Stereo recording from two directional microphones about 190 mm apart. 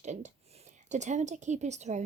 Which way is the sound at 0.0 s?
40° right (ahead or behind).